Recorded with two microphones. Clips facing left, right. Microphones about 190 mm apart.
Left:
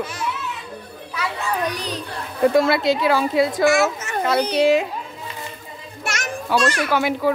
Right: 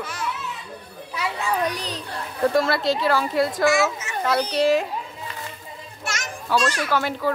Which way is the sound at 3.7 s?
55° left (ahead or behind).